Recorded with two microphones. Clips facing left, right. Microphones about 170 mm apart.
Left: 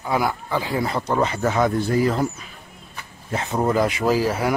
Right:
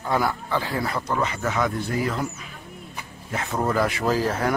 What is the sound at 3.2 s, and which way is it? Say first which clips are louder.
Speech: left 3 dB; 25° left (ahead or behind).